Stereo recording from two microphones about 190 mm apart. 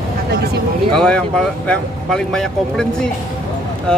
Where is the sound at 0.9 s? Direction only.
5° left (ahead or behind).